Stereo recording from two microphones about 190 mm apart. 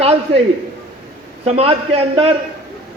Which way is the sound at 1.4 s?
30° right (ahead or behind).